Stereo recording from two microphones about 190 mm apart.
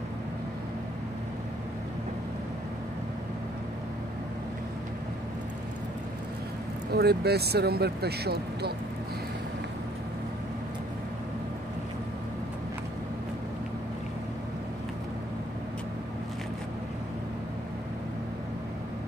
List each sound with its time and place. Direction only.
6.9 s speech: 60° right (ahead or behind)